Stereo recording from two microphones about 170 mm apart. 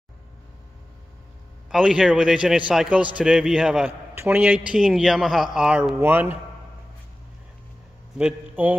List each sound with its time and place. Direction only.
1.7 s a man's voice: 5° right (ahead or behind)
8.2 s a man's voice: 10° right (ahead or behind)